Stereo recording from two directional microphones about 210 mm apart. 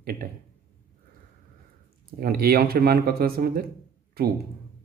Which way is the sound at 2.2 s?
45° right (ahead or behind).